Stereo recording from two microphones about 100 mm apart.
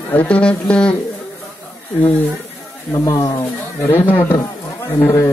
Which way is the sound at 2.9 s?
30° left (ahead or behind).